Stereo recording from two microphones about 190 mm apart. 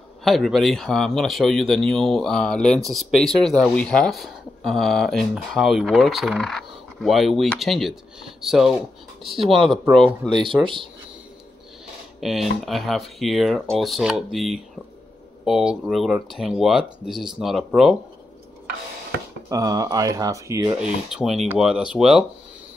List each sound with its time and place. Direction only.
0.2 s speech: centre (ahead or behind)
10.4 s speech: 25° right (ahead or behind)
12.2 s speech: centre (ahead or behind)
19.5 s speech: 20° right (ahead or behind)
20.8 s speech: 5° right (ahead or behind)